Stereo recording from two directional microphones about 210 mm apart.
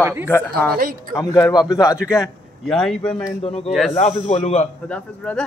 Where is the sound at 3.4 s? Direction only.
30° left (ahead or behind).